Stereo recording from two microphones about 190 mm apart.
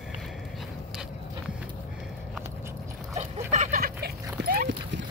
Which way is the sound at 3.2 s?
35° right (ahead or behind).